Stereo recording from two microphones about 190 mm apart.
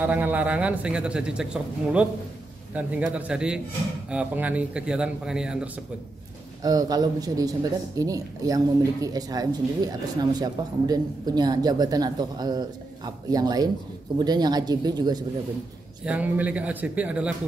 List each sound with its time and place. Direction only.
0.0 s a man's voice: 10° right (ahead or behind)
6.6 s speech: 20° right (ahead or behind)
16.1 s a man's voice: 5° right (ahead or behind)